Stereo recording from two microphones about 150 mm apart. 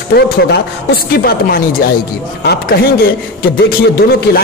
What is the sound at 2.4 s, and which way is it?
Speech, 90° left.